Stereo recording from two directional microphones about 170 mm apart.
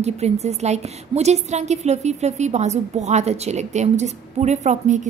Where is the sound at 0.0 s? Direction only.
40° right (ahead or behind).